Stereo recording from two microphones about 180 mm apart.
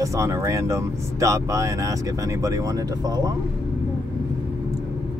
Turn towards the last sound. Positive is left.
turn(degrees=-20)  # may be behind; listen again after turning